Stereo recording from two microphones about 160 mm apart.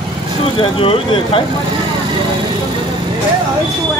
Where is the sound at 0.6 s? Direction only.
35° left (ahead or behind).